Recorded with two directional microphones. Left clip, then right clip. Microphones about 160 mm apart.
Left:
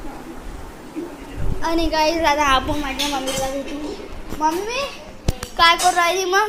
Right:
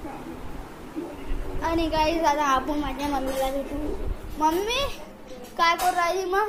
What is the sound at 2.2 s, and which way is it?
Speech, 10° left (ahead or behind).